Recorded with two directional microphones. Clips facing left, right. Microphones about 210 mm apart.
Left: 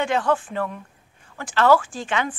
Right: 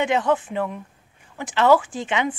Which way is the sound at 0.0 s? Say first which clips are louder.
Right 1 dB; 20° right (ahead or behind).